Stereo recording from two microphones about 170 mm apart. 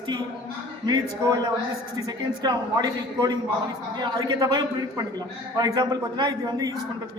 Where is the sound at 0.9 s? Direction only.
20° right (ahead or behind).